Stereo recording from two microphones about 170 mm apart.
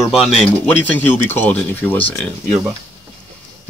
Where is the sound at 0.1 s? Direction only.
Centre (ahead or behind).